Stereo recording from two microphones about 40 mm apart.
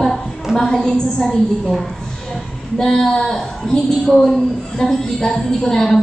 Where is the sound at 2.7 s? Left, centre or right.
Centre.